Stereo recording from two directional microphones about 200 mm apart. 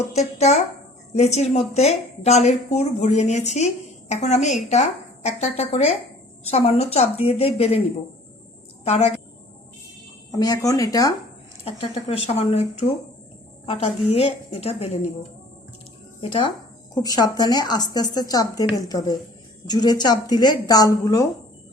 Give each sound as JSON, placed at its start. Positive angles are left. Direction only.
{"t": 0.1, "sound": "a woman's voice", "side_deg": 35}
{"t": 8.8, "sound": "a woman's voice", "side_deg": 30}
{"t": 10.3, "sound": "speech", "side_deg": 15}
{"t": 11.6, "sound": "a woman's voice", "side_deg": 30}
{"t": 16.2, "sound": "a woman's voice", "side_deg": 30}